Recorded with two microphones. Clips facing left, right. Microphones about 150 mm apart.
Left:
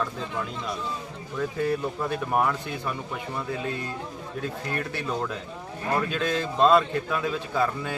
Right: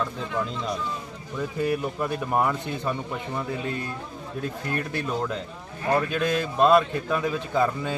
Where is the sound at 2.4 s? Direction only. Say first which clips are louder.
Right 2 dB; 20° right (ahead or behind).